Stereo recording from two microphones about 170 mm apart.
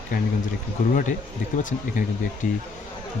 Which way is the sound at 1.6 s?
50° left (ahead or behind).